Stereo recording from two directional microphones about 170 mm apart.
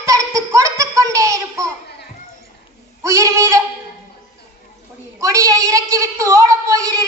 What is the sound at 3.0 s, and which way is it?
Child singing, 15° right (ahead or behind).